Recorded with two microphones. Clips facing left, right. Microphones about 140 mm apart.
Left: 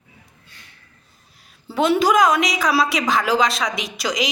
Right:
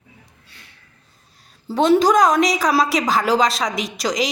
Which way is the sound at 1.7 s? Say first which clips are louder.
Right 2 dB; 35° right (ahead or behind).